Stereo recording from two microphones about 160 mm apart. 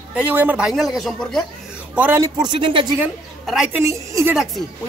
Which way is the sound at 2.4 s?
30° right (ahead or behind).